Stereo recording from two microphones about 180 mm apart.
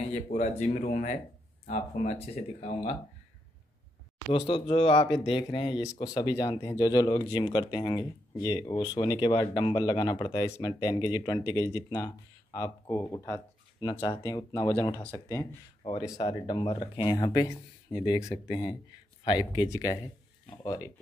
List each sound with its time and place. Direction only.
0.1 s speech: 40° left (ahead or behind)
2.3 s speech: 40° left (ahead or behind)
4.3 s speech: 30° left (ahead or behind)